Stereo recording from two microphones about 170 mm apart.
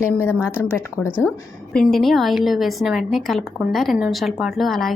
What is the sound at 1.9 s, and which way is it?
A woman's voice, centre (ahead or behind).